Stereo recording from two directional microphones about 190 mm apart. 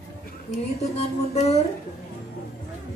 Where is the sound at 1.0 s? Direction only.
35° left (ahead or behind).